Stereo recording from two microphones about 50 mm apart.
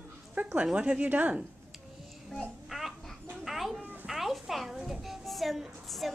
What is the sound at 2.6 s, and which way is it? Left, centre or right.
Babbling, centre.